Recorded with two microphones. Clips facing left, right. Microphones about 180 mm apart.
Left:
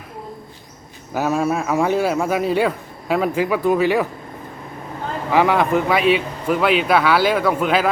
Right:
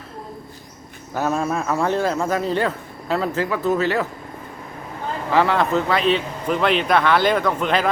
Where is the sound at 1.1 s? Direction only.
10° left (ahead or behind).